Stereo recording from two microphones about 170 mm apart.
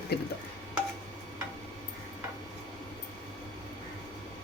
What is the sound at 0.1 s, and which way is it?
Stir, 70° left (ahead or behind).